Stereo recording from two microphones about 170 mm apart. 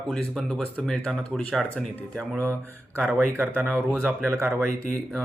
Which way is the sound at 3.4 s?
10° right (ahead or behind).